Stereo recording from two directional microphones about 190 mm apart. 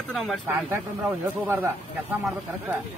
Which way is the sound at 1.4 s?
10° right (ahead or behind).